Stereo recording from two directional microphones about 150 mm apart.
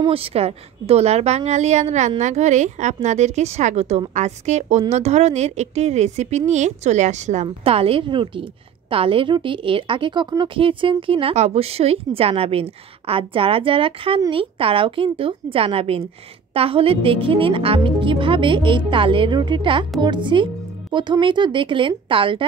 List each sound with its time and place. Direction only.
0.0 s a woman's voice: 40° right (ahead or behind)
7.4 s a woman's voice: 40° right (ahead or behind)